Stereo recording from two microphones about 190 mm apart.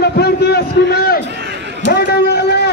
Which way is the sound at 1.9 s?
60° left (ahead or behind).